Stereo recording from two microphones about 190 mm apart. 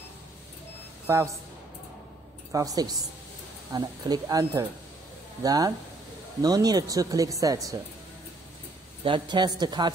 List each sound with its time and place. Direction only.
1.0 s speech: 15° right (ahead or behind)
2.5 s a woman's voice: 20° right (ahead or behind)
9.0 s speech: 25° right (ahead or behind)